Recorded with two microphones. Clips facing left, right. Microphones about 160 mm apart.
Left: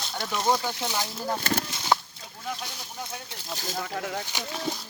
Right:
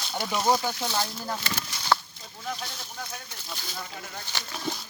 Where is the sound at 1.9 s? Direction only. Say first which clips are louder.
Left 1 dB; 15° left (ahead or behind).